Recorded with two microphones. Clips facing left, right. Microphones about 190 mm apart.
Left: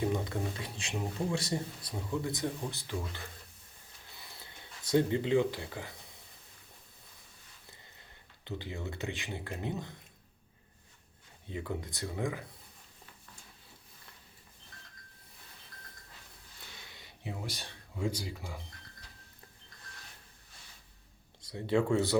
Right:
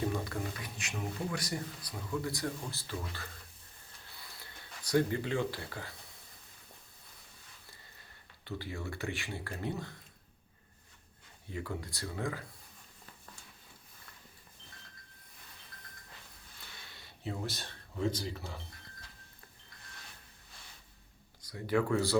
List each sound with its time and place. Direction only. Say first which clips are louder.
0.0 s speech: left 2 dB; 20° left (ahead or behind)
4.2 s a sound: left 1 dB; 20° left (ahead or behind)
8.4 s speech: even; 20° left (ahead or behind)
11.4 s speech: left 2 dB; 20° left (ahead or behind)
16.9 s speech: right 3 dB; 15° left (ahead or behind)
21.4 s speech: left 2 dB; 25° left (ahead or behind)